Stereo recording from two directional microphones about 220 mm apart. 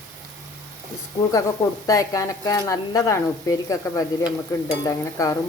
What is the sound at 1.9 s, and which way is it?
A woman's voice, 15° left (ahead or behind).